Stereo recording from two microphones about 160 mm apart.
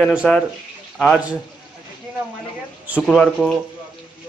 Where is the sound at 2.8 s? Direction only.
10° right (ahead or behind).